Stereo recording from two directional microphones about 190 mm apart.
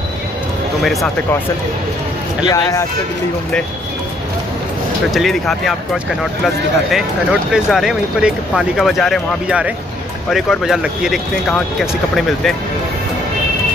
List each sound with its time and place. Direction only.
2.4 s speech: 15° left (ahead or behind)
5.1 s speech: centre (ahead or behind)